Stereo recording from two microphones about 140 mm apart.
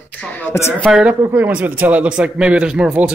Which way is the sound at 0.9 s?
5° right (ahead or behind).